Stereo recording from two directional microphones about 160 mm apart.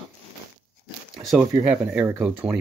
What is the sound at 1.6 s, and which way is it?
Speech, 10° right (ahead or behind).